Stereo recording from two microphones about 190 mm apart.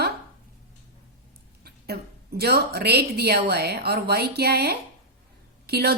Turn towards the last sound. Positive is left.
turn(degrees=-55)  # may be behind; listen again after turning